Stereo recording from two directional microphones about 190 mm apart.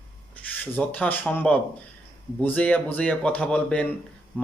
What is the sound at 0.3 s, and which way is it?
A man's voice, 10° left (ahead or behind).